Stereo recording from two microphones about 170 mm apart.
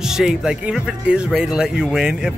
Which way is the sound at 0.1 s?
5° right (ahead or behind).